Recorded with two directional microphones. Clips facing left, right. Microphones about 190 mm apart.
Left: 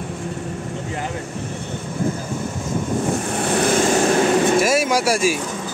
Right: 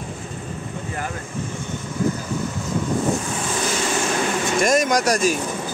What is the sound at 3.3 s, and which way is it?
Vehicle, 60° left (ahead or behind).